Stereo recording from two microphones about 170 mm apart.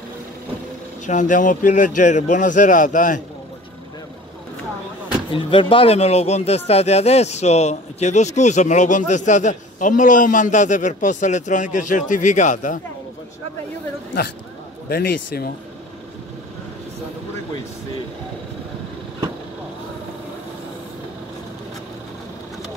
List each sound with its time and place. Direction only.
1.0 s speech: 45° left (ahead or behind)
5.3 s speech: 30° left (ahead or behind); by 12.8 s 50° left (ahead or behind)
14.9 s a man's voice: 70° left (ahead or behind)